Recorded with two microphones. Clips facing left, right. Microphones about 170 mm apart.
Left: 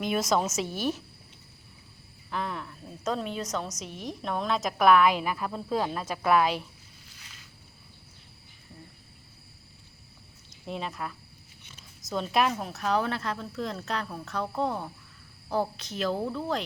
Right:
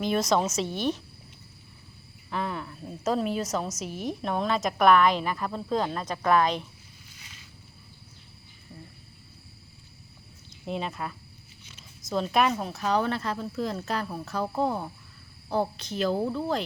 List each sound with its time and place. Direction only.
0.0 s a woman's voice: 5° left (ahead or behind)
2.3 s cricket: centre (ahead or behind)
2.8 s a woman's voice: 5° right (ahead or behind)
10.7 s a woman's voice: centre (ahead or behind)